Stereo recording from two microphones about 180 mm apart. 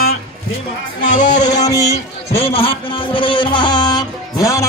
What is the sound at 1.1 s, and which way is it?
Music, 45° left (ahead or behind).